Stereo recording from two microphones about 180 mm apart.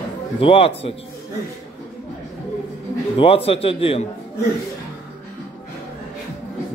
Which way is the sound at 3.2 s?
30° left (ahead or behind).